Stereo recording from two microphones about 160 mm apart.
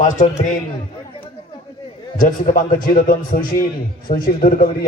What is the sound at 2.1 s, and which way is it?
A man's voice, 55° left (ahead or behind).